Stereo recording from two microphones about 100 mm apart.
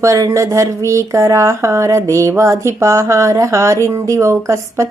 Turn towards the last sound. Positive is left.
turn(degrees=-30)  # may be behind; listen again after turning